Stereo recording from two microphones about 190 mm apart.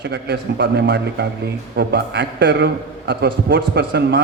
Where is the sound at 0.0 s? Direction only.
60° right (ahead or behind).